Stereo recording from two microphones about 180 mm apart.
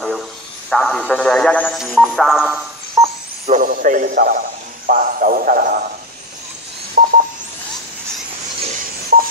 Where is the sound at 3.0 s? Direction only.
15° right (ahead or behind).